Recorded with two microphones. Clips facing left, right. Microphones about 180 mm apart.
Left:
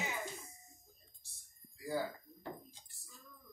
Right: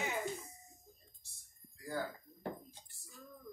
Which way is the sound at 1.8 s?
10° left (ahead or behind).